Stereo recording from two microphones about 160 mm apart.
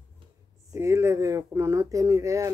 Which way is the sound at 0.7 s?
15° right (ahead or behind).